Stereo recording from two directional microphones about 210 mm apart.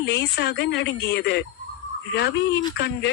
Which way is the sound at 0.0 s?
55° left (ahead or behind).